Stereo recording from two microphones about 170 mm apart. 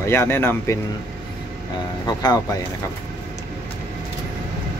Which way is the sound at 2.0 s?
20° left (ahead or behind).